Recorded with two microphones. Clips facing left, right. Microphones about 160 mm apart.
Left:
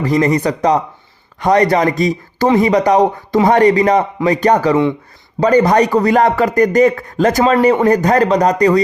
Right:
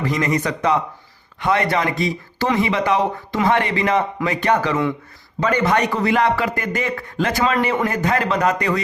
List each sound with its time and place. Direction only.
0.0 s speech: 35° left (ahead or behind)